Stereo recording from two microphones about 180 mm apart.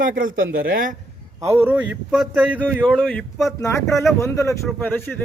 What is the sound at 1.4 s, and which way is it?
A man's voice, 10° right (ahead or behind).